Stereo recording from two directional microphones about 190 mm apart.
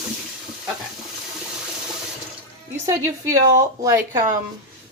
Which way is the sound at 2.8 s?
15° right (ahead or behind).